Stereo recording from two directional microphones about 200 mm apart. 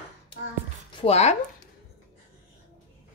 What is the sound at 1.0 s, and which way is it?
Speech, 30° left (ahead or behind).